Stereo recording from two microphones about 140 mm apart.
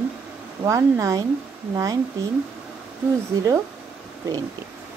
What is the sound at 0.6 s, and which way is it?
Speech, 20° right (ahead or behind).